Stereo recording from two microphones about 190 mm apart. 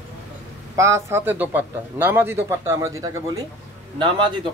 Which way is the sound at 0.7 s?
15° right (ahead or behind).